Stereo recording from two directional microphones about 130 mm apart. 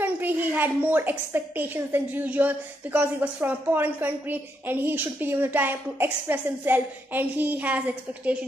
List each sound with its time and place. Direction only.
0.0 s a woman's voice: 15° right (ahead or behind)